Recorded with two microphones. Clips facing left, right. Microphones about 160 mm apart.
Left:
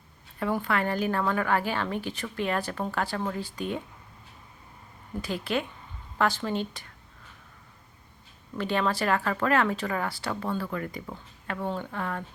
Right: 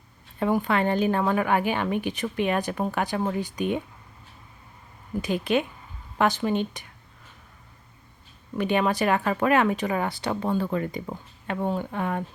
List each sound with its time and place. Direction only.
0.3 s speech: 20° right (ahead or behind)
5.2 s speech: 20° right (ahead or behind)
8.5 s speech: 15° right (ahead or behind)